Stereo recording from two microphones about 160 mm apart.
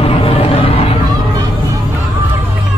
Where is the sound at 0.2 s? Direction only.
35° left (ahead or behind).